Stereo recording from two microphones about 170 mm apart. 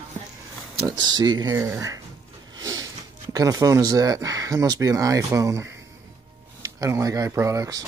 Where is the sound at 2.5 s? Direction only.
20° right (ahead or behind).